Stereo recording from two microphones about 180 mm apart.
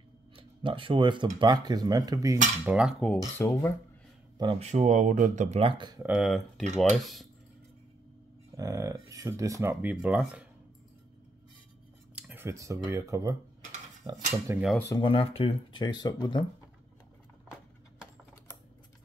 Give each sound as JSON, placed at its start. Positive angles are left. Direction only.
{"t": 0.4, "sound": "speech", "side_deg": -30}
{"t": 2.6, "sound": "cutlery", "side_deg": -5}
{"t": 3.2, "sound": "speech", "side_deg": 15}
{"t": 4.4, "sound": "speech", "side_deg": -30}
{"t": 6.0, "sound": "cutlery", "side_deg": 0}
{"t": 8.5, "sound": "speech", "side_deg": -20}
{"t": 12.2, "sound": "speech", "side_deg": -10}
{"t": 15.0, "sound": "speech", "side_deg": 30}